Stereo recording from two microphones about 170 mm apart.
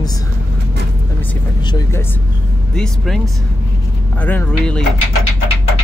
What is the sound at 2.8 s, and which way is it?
Speech, centre (ahead or behind).